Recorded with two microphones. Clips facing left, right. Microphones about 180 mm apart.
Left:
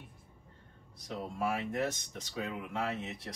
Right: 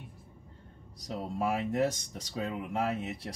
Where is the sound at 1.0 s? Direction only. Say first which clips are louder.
Right 3 dB; 35° right (ahead or behind).